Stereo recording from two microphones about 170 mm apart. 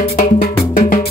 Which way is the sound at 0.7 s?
55° left (ahead or behind).